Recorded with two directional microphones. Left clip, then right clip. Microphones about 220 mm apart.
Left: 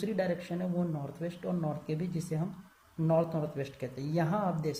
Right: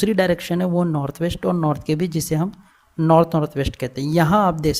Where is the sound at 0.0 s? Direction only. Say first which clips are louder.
Right 14 dB; 40° right (ahead or behind).